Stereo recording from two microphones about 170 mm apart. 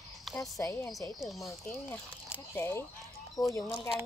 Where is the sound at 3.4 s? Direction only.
Centre (ahead or behind).